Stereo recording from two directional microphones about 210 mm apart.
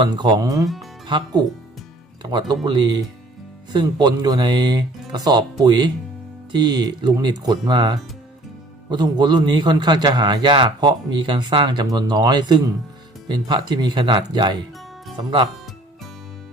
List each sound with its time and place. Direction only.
0.0 s a man's voice: 20° right (ahead or behind)
0.6 s speech: centre (ahead or behind)
1.0 s a man's voice: 20° right (ahead or behind)